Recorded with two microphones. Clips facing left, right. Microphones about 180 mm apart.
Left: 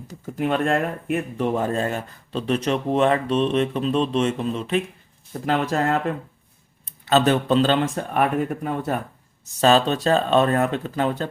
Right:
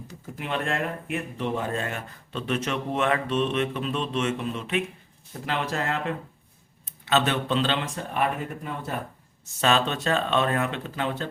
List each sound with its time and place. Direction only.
0.3 s speech: 45° left (ahead or behind)
9.6 s speech: 35° left (ahead or behind)